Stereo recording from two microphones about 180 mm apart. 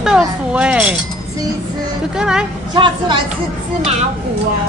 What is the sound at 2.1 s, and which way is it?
Speech, 5° right (ahead or behind).